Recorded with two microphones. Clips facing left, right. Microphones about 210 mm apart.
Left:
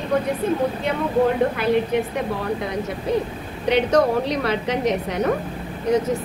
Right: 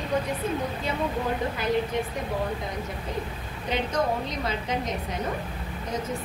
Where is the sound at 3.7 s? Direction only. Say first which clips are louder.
Left 9 dB; 70° left (ahead or behind).